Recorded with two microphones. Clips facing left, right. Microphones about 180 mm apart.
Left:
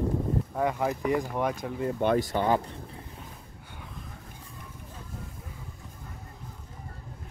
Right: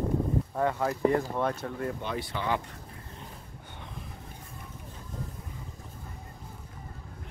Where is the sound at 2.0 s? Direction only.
45° left (ahead or behind).